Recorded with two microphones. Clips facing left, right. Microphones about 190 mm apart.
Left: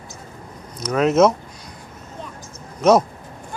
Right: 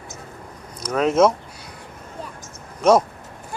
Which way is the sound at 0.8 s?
5° left (ahead or behind).